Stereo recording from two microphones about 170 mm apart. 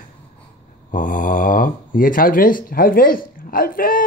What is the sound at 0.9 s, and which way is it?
Speech, 50° left (ahead or behind).